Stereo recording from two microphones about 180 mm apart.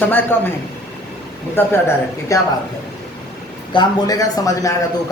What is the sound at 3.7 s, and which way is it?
Speech, 25° left (ahead or behind).